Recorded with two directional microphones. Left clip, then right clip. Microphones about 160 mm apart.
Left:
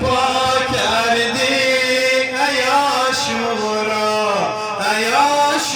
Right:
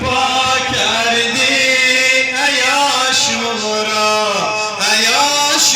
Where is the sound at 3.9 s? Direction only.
55° left (ahead or behind); by 5.7 s 75° left (ahead or behind).